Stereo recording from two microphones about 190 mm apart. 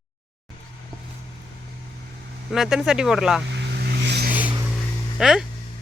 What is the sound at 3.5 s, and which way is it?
Vehicle, 60° right (ahead or behind).